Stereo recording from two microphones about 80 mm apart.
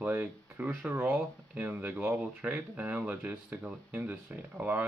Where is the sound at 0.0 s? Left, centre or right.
Centre.